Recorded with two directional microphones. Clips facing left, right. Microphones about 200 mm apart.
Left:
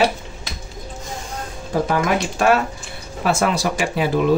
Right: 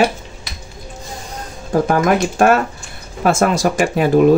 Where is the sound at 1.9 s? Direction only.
50° right (ahead or behind).